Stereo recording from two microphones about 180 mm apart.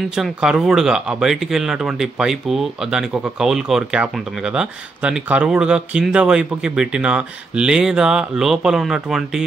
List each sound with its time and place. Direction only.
0.1 s speech: 5° right (ahead or behind)